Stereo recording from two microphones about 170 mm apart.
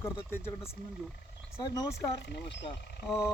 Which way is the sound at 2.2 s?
80° left.